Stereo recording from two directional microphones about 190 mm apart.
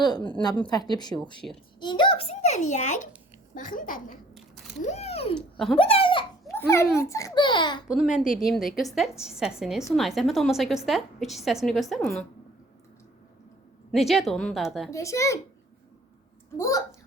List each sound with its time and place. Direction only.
0.7 s a child's voice: 20° left (ahead or behind)
1.4 s a child's voice: 35° right (ahead or behind)
1.8 s a child's voice: 25° left (ahead or behind)
6.5 s babbling: 15° left (ahead or behind)
7.0 s a child's voice: 15° left (ahead or behind)
7.9 s a woman's voice: centre (ahead or behind)
8.1 s a woman's voice: 45° left (ahead or behind)
8.4 s a woman's voice: centre (ahead or behind)
13.9 s a woman's voice: centre (ahead or behind)
14.8 s a child's voice: 15° left (ahead or behind)
16.6 s a child's voice: 15° left (ahead or behind)